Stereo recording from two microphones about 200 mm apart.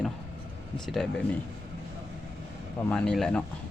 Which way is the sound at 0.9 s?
5° left (ahead or behind).